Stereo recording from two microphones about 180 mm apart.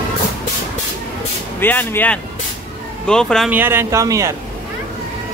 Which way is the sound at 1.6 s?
10° left (ahead or behind).